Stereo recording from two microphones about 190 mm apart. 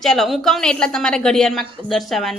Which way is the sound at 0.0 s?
Centre (ahead or behind).